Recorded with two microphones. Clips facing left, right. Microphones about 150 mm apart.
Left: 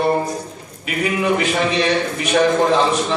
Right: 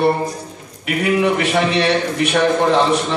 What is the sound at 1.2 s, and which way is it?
A man's voice, 65° right (ahead or behind).